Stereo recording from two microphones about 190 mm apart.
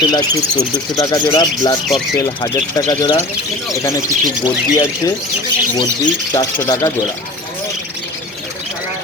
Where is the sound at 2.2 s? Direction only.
15° left (ahead or behind).